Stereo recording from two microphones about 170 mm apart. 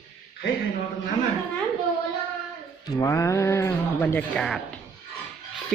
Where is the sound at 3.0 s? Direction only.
20° left (ahead or behind).